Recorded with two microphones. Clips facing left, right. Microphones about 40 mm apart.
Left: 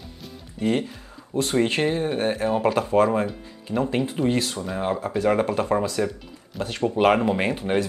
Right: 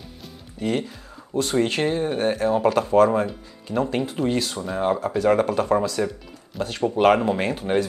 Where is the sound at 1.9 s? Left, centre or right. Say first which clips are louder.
Right 1 dB; left.